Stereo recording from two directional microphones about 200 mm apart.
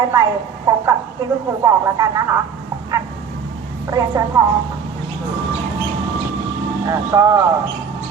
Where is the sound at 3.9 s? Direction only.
15° right (ahead or behind).